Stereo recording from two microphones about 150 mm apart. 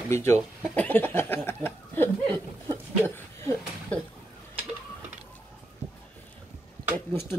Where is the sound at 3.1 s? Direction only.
15° left (ahead or behind).